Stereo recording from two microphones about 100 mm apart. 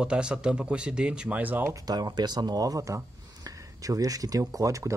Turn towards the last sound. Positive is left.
turn(degrees=-35)  # may be behind; listen again after turning